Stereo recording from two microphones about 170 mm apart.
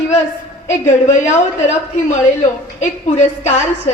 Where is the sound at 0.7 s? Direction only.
45° left (ahead or behind).